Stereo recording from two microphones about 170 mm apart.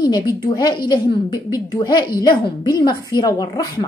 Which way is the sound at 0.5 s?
25° left (ahead or behind).